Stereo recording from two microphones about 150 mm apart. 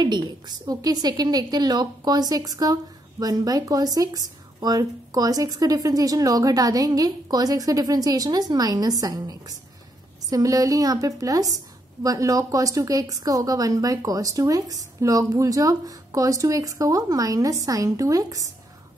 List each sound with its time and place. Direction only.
0.0 s a woman's voice: 30° right (ahead or behind)